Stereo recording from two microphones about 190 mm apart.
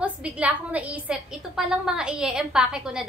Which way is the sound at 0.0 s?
5° right (ahead or behind).